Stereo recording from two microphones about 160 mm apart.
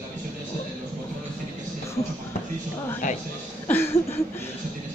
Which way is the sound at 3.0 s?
50° left (ahead or behind).